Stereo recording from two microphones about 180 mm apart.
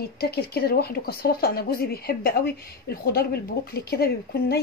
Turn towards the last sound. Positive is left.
turn(degrees=60)  # may be behind; listen again after turning